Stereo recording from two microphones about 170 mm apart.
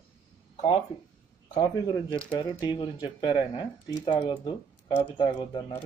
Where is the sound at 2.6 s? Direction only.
25° left (ahead or behind).